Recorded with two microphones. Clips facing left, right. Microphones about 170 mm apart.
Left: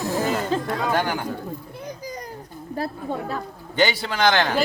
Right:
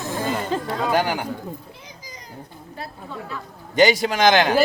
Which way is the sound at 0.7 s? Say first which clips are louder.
Right 2 dB; 20° right (ahead or behind).